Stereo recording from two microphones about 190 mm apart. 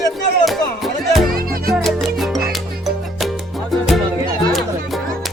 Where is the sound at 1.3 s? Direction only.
50° right (ahead or behind).